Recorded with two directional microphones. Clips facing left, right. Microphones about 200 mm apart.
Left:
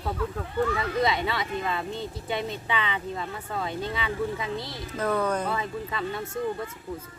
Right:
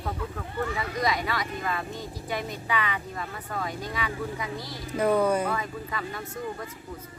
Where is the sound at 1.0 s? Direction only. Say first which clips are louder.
Left 1 dB; 25° left (ahead or behind).